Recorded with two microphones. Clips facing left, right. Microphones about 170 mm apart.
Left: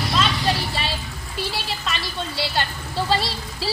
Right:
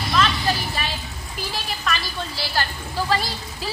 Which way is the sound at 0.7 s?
30° left (ahead or behind).